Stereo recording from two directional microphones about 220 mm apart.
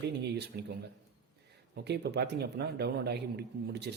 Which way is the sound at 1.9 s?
50° right (ahead or behind).